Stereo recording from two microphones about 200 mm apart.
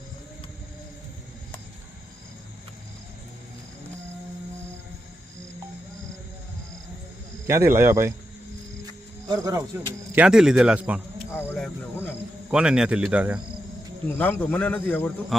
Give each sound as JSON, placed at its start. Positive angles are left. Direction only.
{"t": 7.4, "sound": "speech", "side_deg": -10}
{"t": 8.9, "sound": "music", "side_deg": -20}
{"t": 10.2, "sound": "speech", "side_deg": -5}
{"t": 11.3, "sound": "speech", "side_deg": 10}
{"t": 12.5, "sound": "speech", "side_deg": -5}
{"t": 14.1, "sound": "a man's voice", "side_deg": 10}